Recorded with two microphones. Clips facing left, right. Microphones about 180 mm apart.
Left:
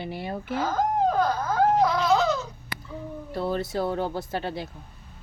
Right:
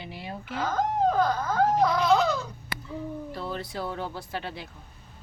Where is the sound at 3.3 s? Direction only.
40° left (ahead or behind).